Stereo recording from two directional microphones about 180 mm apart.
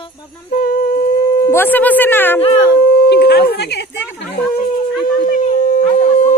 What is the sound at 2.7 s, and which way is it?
Howl, 65° left (ahead or behind).